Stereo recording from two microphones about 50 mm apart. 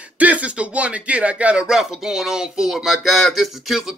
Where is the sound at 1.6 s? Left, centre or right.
Centre.